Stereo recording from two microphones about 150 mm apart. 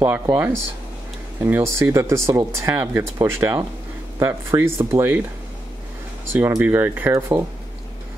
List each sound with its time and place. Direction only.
0.0 s speech: 15° right (ahead or behind)
6.3 s speech: 15° right (ahead or behind)